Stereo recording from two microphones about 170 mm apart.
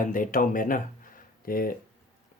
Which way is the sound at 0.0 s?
50° left (ahead or behind).